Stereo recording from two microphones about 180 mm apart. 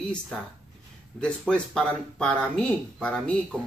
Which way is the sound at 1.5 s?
5° left (ahead or behind).